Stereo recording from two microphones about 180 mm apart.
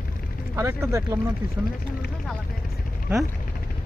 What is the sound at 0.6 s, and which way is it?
Speech, 15° right (ahead or behind).